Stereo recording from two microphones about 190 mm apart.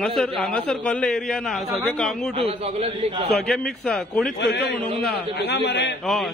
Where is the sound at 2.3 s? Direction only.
30° right (ahead or behind).